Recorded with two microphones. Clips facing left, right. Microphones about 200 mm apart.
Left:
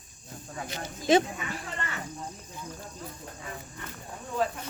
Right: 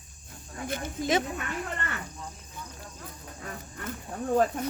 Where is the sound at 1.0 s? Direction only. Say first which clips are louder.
Left 5 dB; 30° left (ahead or behind).